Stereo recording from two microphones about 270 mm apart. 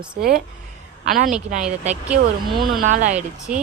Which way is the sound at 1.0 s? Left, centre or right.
Right.